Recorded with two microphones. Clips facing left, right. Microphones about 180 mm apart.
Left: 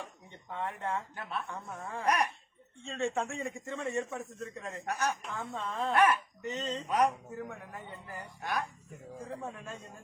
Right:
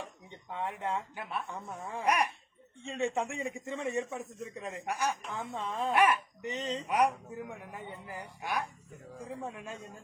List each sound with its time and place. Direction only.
0.5 s speech: 15° right (ahead or behind)